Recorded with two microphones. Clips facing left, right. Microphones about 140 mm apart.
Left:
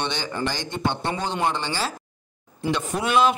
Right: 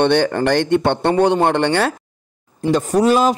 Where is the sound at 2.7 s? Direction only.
40° right (ahead or behind).